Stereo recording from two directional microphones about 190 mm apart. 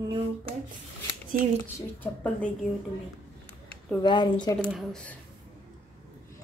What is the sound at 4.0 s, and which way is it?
Speech, 25° left (ahead or behind).